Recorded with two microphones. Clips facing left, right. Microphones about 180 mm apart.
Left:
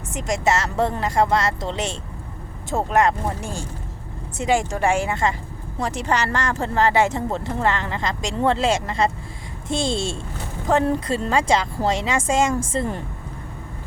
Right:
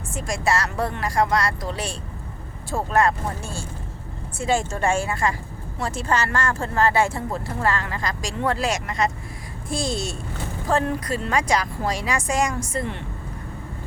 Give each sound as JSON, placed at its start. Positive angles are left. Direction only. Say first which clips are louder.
{"t": 0.1, "sound": "speech", "louder": "left 3 dB", "side_deg": 20}